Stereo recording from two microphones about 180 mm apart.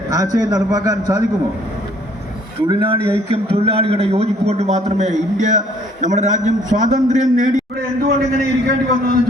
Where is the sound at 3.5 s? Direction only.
35° right (ahead or behind).